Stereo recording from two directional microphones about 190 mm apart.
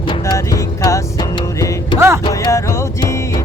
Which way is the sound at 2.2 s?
20° left (ahead or behind).